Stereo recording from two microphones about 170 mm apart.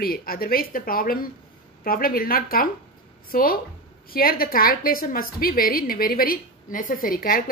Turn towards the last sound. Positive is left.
turn(degrees=60)  # may be behind; listen again after turning